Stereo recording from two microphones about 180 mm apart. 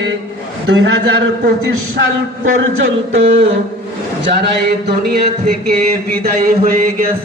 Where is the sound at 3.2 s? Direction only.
90° right.